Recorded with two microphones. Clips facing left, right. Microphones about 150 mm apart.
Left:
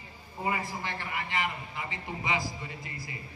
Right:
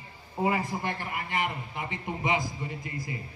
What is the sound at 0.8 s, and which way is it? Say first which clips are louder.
A man's voice: right 3 dB; 50° right (ahead or behind).